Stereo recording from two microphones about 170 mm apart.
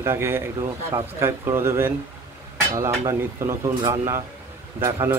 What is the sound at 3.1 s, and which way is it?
Speech, 20° right (ahead or behind).